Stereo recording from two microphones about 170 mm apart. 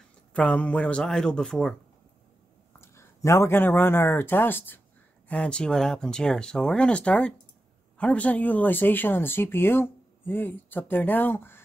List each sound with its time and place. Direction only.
0.3 s speech: 5° left (ahead or behind)
2.8 s speech: 15° left (ahead or behind)